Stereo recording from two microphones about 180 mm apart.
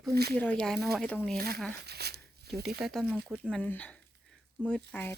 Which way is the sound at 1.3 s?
60° right (ahead or behind).